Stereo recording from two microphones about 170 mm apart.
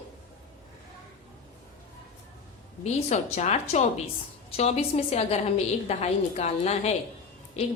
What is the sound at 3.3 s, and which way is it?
A woman's voice, 40° left (ahead or behind).